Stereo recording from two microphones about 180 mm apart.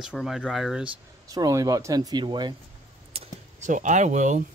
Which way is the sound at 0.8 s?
20° right (ahead or behind).